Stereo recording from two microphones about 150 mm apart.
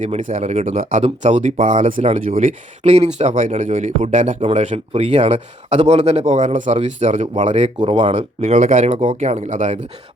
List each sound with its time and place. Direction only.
0.0 s speech: 55° right (ahead or behind)
7.9 s speech: 35° right (ahead or behind)
8.4 s speech: 60° right (ahead or behind)